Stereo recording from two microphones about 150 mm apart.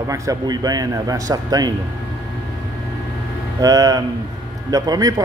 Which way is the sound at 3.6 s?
25° right (ahead or behind).